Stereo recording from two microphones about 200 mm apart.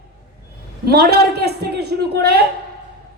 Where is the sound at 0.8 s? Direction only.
55° right (ahead or behind).